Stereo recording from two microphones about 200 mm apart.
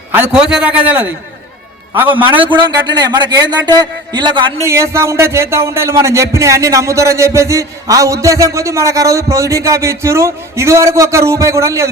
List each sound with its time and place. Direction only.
0.1 s speech: 10° right (ahead or behind)
2.3 s speech: 25° right (ahead or behind)
4.7 s speech: 15° right (ahead or behind)